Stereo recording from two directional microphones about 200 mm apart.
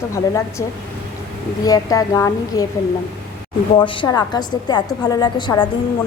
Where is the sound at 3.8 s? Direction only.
20° left (ahead or behind).